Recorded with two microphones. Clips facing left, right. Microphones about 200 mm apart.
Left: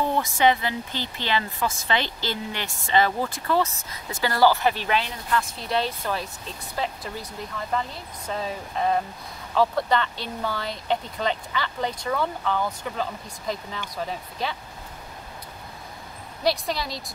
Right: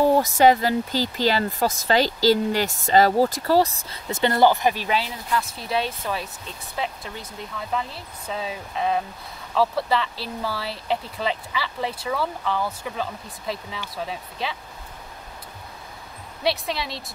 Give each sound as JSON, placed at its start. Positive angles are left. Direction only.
{"t": 0.0, "sound": "speech", "side_deg": -40}
{"t": 16.4, "sound": "speech", "side_deg": 0}